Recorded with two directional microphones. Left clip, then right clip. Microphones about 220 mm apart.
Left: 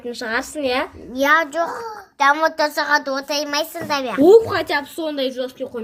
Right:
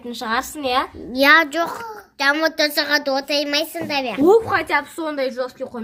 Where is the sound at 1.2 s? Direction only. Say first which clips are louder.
Right 3 dB; 20° right (ahead or behind); by 5.2 s centre (ahead or behind).